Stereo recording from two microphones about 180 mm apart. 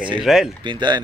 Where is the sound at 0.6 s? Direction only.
25° right (ahead or behind).